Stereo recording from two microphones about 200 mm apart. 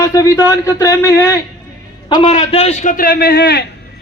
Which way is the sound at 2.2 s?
35° left (ahead or behind).